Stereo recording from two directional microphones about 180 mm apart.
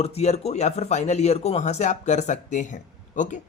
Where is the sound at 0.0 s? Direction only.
35° left (ahead or behind).